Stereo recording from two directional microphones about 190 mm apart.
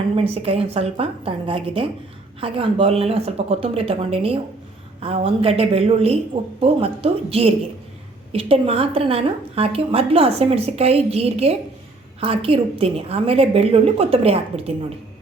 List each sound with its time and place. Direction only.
0.4 s a woman's voice: 30° right (ahead or behind)